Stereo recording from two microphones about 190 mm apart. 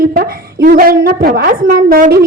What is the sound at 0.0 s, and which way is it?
A woman's voice, 50° right (ahead or behind).